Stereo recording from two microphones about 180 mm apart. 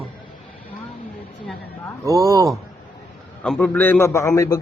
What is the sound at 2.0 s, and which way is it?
Speech, 15° right (ahead or behind).